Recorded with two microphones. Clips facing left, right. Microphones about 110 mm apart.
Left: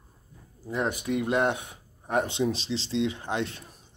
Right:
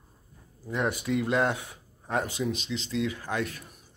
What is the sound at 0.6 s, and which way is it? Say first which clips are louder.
Speech: even; 20° left (ahead or behind).